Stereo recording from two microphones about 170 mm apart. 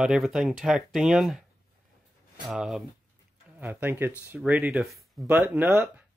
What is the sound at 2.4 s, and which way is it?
Speech, 5° right (ahead or behind).